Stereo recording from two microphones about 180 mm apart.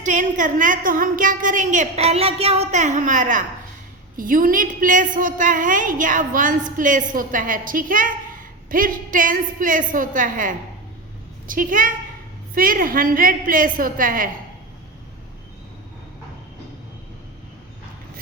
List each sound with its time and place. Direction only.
0.0 s a woman's voice: 45° right (ahead or behind)